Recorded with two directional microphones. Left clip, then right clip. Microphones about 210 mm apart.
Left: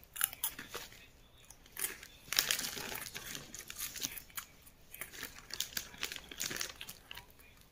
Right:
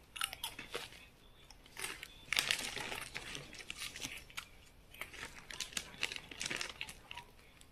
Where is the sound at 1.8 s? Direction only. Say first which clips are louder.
Even; 15° left (ahead or behind).